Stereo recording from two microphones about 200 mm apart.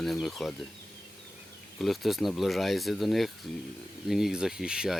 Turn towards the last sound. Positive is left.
turn(degrees=-5)  # may be behind; listen again after turning